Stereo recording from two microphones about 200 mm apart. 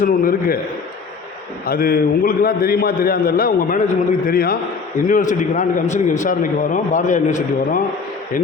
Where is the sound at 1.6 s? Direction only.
50° left (ahead or behind).